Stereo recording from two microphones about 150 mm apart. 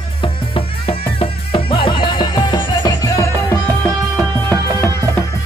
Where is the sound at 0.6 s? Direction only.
35° left (ahead or behind).